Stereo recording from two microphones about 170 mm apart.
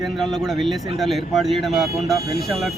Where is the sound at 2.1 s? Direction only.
65° left (ahead or behind).